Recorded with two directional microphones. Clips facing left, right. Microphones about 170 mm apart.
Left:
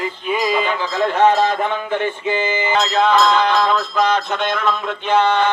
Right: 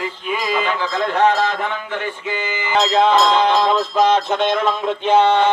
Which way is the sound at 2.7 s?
30° right (ahead or behind).